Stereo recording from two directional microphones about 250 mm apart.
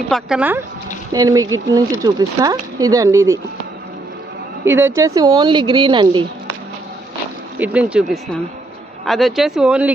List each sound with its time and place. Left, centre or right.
0.1 s speech: centre
4.6 s speech: centre
7.6 s speech: centre